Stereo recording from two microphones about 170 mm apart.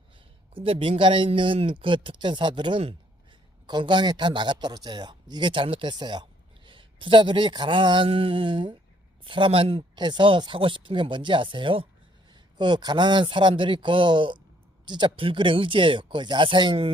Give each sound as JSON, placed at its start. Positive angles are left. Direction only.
{"t": 0.5, "sound": "speech", "side_deg": -30}